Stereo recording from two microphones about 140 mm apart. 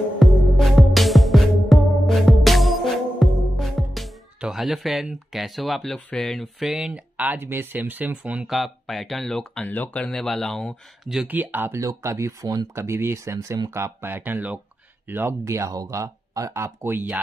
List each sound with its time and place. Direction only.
0.2 s music: centre (ahead or behind)
11.3 s speech: 15° right (ahead or behind)